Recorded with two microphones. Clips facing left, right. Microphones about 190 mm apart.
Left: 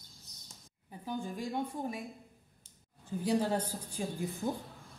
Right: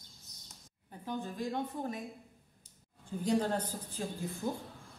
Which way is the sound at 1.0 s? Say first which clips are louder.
Even; 10° left (ahead or behind).